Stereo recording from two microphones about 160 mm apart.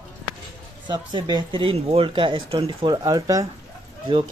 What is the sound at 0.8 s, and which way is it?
Speech, 25° right (ahead or behind).